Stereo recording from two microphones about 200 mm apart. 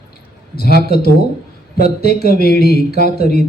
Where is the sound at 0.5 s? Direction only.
50° left (ahead or behind).